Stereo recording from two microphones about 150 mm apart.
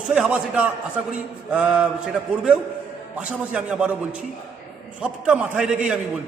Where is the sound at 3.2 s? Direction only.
10° right (ahead or behind).